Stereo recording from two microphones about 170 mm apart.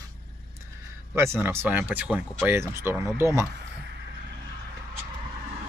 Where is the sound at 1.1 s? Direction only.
15° right (ahead or behind).